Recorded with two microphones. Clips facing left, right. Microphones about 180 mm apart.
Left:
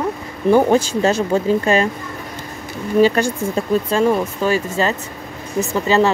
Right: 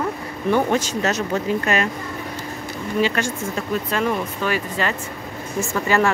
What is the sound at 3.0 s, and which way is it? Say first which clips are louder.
Speech: left 7 dB; 35° left (ahead or behind).